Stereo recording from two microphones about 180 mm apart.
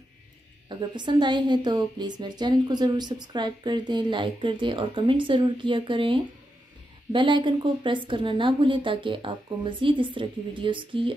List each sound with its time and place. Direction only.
0.7 s a woman's voice: 25° right (ahead or behind)